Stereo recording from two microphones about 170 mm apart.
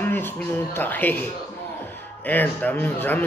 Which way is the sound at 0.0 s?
10° left (ahead or behind).